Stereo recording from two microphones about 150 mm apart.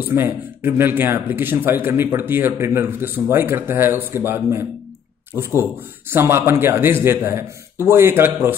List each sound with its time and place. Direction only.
0.1 s a man's voice: 15° right (ahead or behind)